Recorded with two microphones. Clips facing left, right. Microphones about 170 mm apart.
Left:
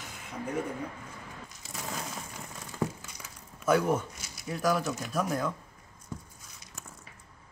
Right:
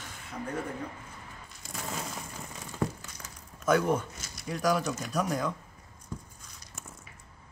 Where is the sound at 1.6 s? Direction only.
Centre (ahead or behind).